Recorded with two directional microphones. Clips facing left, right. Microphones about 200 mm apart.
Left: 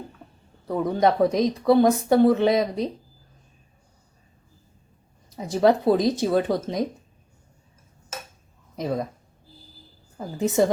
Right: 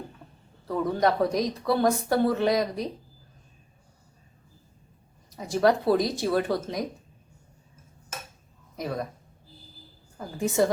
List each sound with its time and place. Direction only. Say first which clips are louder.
0.7 s a woman's voice: left 3 dB; 20° left (ahead or behind)
5.4 s a woman's voice: left 3 dB; 20° left (ahead or behind)
8.8 s a woman's voice: left 5 dB; 25° left (ahead or behind)
10.2 s a woman's voice: left 3 dB; 20° left (ahead or behind)